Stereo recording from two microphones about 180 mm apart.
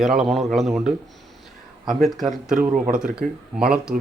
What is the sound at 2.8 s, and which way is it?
Speech, 50° right (ahead or behind).